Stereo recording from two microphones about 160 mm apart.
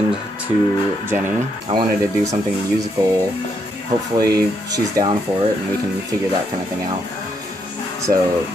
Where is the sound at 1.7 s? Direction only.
25° right (ahead or behind).